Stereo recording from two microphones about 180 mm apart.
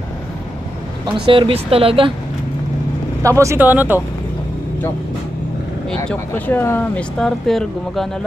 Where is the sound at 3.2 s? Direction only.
15° right (ahead or behind).